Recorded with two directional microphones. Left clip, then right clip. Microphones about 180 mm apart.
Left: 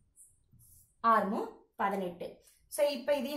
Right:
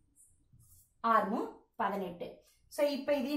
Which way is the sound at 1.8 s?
45° left (ahead or behind).